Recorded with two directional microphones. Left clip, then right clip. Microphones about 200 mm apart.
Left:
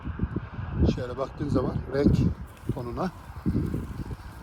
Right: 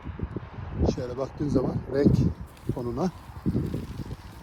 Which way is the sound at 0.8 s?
15° right (ahead or behind).